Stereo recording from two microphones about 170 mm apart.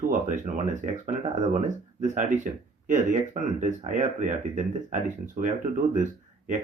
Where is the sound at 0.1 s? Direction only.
50° right (ahead or behind).